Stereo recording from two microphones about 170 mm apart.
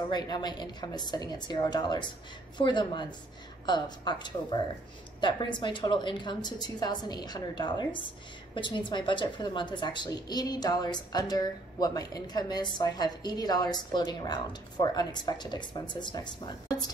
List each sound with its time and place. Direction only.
0.1 s a woman's voice: 25° left (ahead or behind)